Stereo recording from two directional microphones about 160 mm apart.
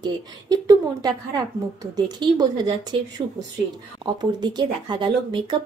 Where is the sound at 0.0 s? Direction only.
25° right (ahead or behind).